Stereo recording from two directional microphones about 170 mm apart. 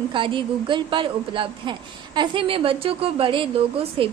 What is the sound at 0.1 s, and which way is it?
A woman's voice, 30° right (ahead or behind).